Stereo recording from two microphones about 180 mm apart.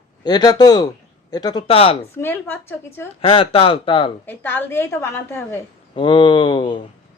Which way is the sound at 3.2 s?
30° left (ahead or behind).